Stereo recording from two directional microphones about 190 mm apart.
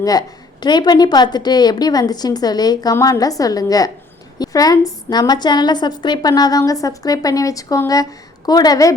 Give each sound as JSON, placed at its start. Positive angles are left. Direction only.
{"t": 0.0, "sound": "a woman's voice", "side_deg": 20}